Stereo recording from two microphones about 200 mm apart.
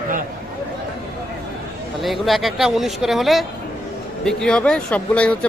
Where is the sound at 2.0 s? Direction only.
Centre (ahead or behind).